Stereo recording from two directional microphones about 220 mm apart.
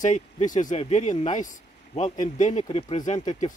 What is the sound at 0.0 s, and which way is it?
Speech, 35° left (ahead or behind).